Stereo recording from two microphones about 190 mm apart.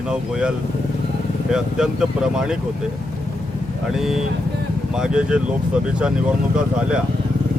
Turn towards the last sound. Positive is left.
turn(degrees=-5)  # may be behind; listen again after turning